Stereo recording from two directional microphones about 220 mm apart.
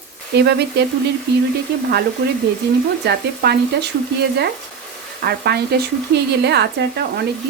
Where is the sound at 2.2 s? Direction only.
50° right (ahead or behind).